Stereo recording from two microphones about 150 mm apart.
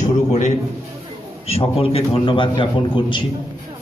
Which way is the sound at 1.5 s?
40° left (ahead or behind).